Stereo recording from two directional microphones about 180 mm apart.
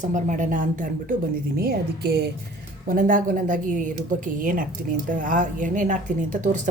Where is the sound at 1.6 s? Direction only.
60° right (ahead or behind).